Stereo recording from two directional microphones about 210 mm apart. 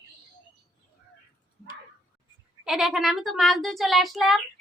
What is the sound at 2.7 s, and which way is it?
Speech, centre (ahead or behind).